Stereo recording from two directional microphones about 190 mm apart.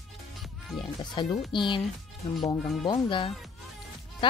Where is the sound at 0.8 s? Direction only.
25° left (ahead or behind).